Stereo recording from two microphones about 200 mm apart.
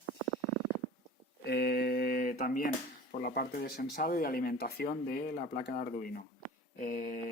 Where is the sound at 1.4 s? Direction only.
55° left (ahead or behind).